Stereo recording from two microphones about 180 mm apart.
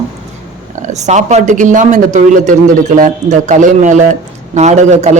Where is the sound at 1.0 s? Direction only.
40° right (ahead or behind).